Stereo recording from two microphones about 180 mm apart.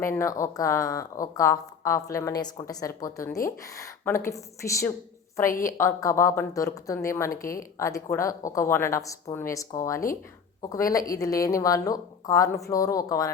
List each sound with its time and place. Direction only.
0.0 s speech: 15° left (ahead or behind)
5.5 s a woman's voice: 50° left (ahead or behind)
5.7 s speech: 15° left (ahead or behind)